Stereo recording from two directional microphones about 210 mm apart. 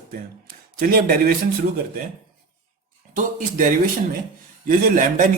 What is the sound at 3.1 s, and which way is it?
A man's voice, 40° right (ahead or behind).